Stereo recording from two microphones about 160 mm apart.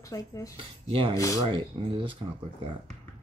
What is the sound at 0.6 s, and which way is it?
Speech, 30° right (ahead or behind).